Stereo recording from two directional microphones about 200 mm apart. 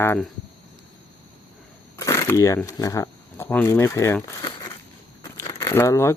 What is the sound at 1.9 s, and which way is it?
Speech, 15° left (ahead or behind).